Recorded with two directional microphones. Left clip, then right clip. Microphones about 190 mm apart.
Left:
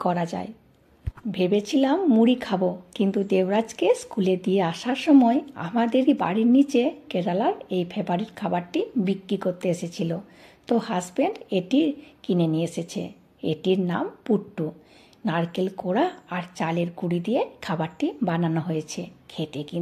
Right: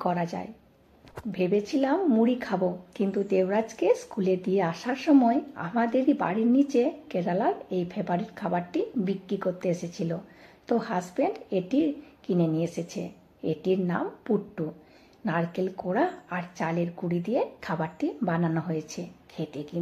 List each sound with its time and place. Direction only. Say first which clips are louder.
0.0 s speech: left 3 dB; 30° left (ahead or behind)